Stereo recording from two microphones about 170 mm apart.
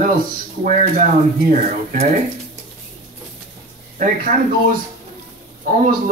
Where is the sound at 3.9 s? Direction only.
50° right (ahead or behind).